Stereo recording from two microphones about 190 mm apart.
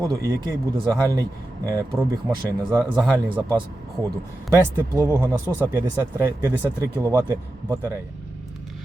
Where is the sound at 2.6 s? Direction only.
15° right (ahead or behind).